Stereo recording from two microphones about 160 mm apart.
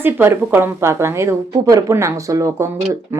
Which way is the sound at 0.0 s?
15° right (ahead or behind).